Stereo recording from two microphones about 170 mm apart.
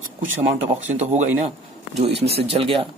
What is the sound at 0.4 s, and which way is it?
Speech, 40° right (ahead or behind).